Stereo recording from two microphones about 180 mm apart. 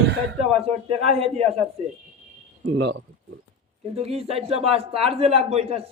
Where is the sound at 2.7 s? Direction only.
90° right.